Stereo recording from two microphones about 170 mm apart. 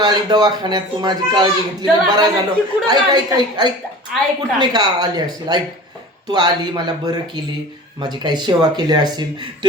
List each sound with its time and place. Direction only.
0.0 s a man's voice: 25° right (ahead or behind)